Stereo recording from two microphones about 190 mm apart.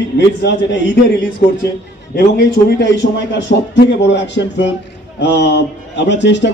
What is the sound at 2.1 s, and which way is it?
A man's voice, 60° left (ahead or behind).